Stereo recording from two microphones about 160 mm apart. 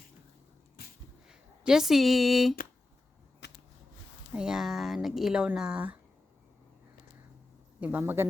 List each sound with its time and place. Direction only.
1.3 s speech: 5° right (ahead or behind)
3.4 s a sound: 90° left
4.4 s speech: 5° right (ahead or behind)
7.8 s speech: 10° right (ahead or behind)